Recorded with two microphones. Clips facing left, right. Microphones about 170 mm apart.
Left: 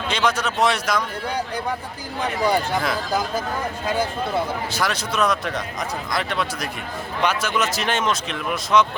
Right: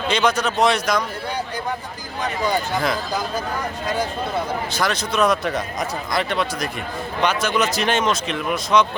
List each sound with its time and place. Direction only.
0.1 s speech: centre (ahead or behind)
2.4 s speech: 5° left (ahead or behind)
4.7 s speech: 5° left (ahead or behind)